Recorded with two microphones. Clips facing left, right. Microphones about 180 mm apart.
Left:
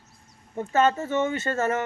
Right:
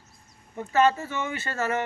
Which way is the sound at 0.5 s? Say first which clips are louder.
Even; 25° left (ahead or behind).